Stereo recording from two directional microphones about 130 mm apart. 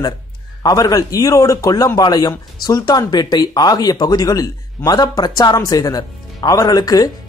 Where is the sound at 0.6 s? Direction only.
25° left (ahead or behind).